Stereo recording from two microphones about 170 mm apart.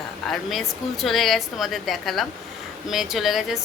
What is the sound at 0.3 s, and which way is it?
A woman's voice, centre (ahead or behind).